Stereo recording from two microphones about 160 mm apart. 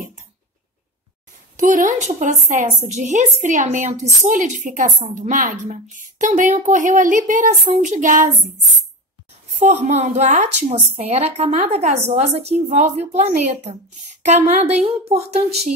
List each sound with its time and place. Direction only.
1.6 s a woman's voice: 50° right (ahead or behind)
9.5 s a sound: 50° right (ahead or behind)
9.8 s a woman's voice: 45° right (ahead or behind)